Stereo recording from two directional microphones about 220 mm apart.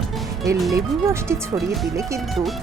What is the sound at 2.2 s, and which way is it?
Speech, centre (ahead or behind).